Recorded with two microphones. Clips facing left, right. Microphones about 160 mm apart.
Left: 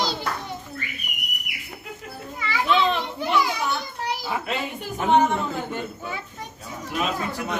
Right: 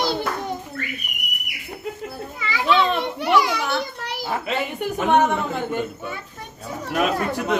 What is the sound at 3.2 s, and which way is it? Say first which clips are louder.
Children playing: right 4 dB; 75° right (ahead or behind).